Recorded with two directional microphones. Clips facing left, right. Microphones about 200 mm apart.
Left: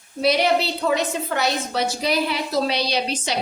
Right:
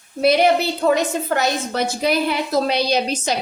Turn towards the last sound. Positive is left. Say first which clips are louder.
# right 4 dB
turn(degrees=-45)  # may be behind; listen again after turning